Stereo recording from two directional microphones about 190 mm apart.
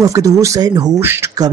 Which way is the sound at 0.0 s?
15° right (ahead or behind).